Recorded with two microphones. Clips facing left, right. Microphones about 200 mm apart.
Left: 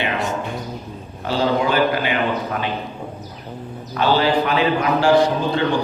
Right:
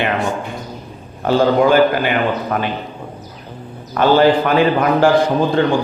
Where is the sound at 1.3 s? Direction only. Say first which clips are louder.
Right 6 dB; 50° right (ahead or behind).